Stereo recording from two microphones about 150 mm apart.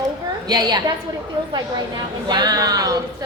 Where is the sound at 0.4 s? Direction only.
25° right (ahead or behind).